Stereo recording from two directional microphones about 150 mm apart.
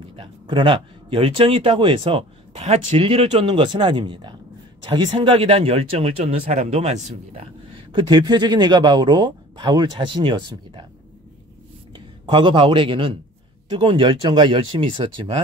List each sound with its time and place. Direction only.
0.1 s speech: 35° right (ahead or behind)
12.3 s speech: 35° right (ahead or behind)